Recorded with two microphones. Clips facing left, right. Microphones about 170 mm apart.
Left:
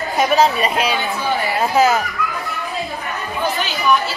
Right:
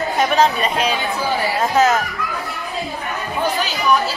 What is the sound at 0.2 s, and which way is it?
Speech, 10° left (ahead or behind).